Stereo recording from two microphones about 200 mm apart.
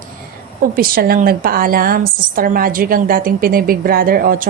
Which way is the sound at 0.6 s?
45° right (ahead or behind).